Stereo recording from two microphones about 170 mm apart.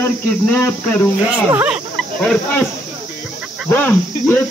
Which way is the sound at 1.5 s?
10° right (ahead or behind).